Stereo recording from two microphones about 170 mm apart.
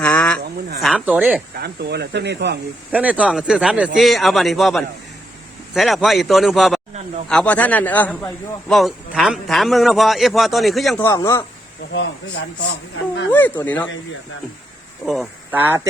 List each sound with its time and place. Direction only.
0.0 s a sound: 10° left (ahead or behind)
0.8 s speech: 5° right (ahead or behind)
1.5 s speech: 70° right (ahead or behind)
2.9 s a man's voice: 10° right (ahead or behind)
11.0 s a man's voice: 15° left (ahead or behind)
11.9 s speech: 90° left
13.3 s a man's voice: 10° left (ahead or behind)
15.0 s a man's voice: centre (ahead or behind)
15.5 s speech: 10° right (ahead or behind)